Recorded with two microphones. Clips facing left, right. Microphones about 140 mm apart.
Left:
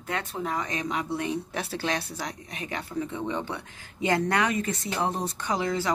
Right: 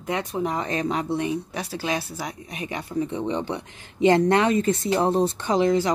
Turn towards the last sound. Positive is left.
turn(degrees=-20)  # may be behind; listen again after turning